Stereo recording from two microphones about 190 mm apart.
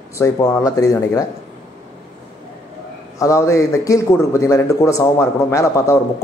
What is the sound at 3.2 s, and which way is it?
A man's voice, 15° left (ahead or behind).